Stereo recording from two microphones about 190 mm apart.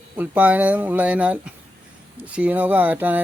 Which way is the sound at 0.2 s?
10° right (ahead or behind).